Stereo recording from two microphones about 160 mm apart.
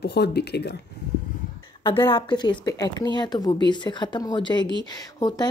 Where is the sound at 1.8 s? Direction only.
30° left (ahead or behind).